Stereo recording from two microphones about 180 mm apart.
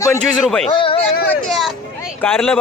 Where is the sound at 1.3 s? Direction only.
Centre (ahead or behind).